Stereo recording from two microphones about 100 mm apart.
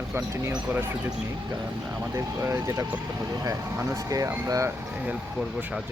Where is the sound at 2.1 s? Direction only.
35° right (ahead or behind).